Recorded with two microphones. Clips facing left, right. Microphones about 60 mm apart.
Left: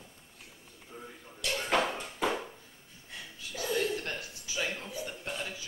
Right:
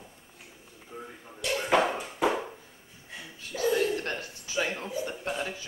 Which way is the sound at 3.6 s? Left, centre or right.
Centre.